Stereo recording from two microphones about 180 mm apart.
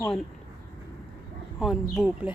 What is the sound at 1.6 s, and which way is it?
Speech, 5° right (ahead or behind).